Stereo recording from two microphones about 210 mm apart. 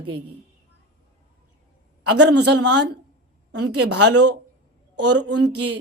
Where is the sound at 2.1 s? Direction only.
55° right (ahead or behind); by 4.3 s 75° right (ahead or behind).